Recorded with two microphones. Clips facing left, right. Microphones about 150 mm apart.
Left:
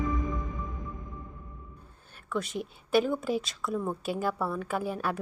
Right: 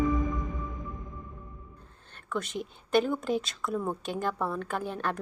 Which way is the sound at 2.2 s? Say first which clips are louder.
Left 1 dB; centre (ahead or behind).